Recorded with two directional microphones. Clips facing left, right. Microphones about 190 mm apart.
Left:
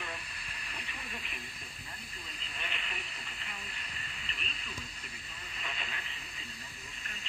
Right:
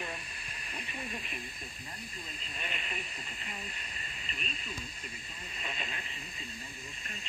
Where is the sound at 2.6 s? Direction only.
25° right (ahead or behind).